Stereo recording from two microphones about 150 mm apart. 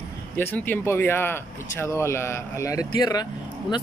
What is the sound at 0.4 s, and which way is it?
Speech, 10° left (ahead or behind).